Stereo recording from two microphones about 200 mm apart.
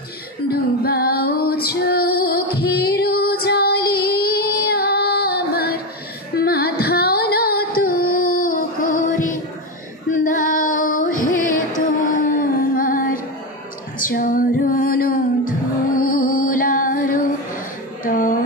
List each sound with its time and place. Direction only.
0.5 s music: 50° left (ahead or behind)
10.0 s female singing: 40° left (ahead or behind)
11.8 s music: 40° left (ahead or behind)